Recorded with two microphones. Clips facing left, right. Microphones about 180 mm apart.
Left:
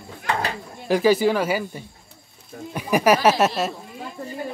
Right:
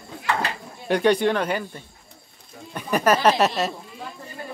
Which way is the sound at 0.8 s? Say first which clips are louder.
Left 1 dB; centre (ahead or behind).